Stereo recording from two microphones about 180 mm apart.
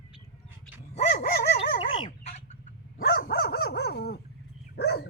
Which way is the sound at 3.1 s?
60° left (ahead or behind).